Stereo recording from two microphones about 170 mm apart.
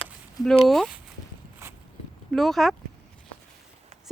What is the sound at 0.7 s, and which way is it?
Speech, centre (ahead or behind).